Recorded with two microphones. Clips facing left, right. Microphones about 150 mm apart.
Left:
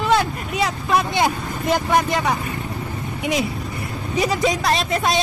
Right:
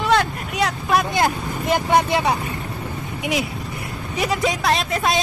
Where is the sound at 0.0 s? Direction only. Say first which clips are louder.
Even; 5° left (ahead or behind).